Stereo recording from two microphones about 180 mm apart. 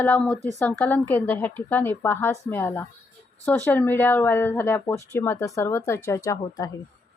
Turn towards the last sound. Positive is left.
turn(degrees=20)  # may be behind; listen again after turning